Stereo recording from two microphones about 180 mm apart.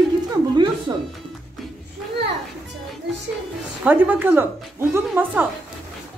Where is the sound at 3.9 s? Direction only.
10° right (ahead or behind).